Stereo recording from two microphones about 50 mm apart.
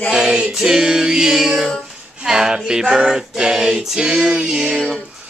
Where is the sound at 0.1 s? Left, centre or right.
Centre.